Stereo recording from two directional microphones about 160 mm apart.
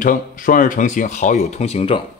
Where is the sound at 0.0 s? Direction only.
55° left (ahead or behind); by 2.0 s 35° left (ahead or behind).